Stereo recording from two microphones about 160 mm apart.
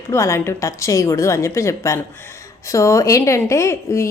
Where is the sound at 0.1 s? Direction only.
20° left (ahead or behind).